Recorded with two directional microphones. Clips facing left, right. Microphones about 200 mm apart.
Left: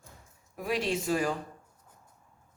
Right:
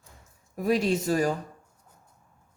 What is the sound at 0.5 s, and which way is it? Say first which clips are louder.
Speech: right 6 dB; 40° right (ahead or behind).